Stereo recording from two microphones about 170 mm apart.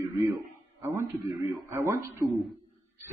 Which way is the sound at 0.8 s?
20° right (ahead or behind).